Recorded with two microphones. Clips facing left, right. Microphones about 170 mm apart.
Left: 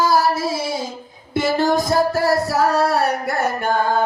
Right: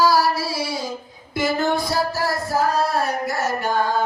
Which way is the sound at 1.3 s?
30° left (ahead or behind).